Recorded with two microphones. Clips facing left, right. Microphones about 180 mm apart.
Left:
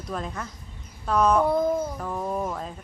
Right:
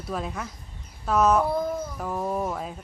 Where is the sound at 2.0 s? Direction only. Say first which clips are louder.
Right 1 dB; 5° right (ahead or behind).